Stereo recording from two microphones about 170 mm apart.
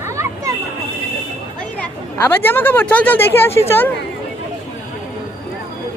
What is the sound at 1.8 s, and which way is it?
Speech, 10° left (ahead or behind).